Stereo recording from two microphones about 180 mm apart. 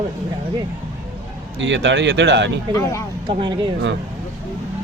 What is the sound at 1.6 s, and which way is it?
Speech, 90° right.